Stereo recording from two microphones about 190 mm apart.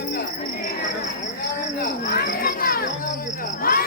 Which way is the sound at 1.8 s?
55° left (ahead or behind).